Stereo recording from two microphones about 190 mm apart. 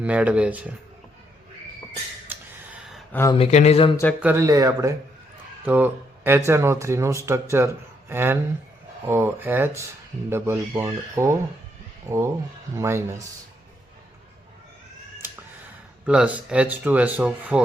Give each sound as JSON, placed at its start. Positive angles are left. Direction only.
{"t": 0.0, "sound": "speech", "side_deg": -5}
{"t": 2.3, "sound": "a sound", "side_deg": -10}
{"t": 2.9, "sound": "a sound", "side_deg": 10}
{"t": 3.3, "sound": "speech", "side_deg": 35}
{"t": 4.2, "sound": "speech", "side_deg": -10}
{"t": 16.0, "sound": "speech", "side_deg": -5}